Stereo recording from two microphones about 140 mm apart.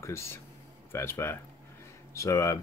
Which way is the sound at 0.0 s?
20° left (ahead or behind).